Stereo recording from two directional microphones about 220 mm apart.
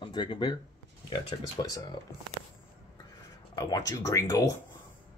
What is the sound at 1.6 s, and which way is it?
Speech, 25° left (ahead or behind).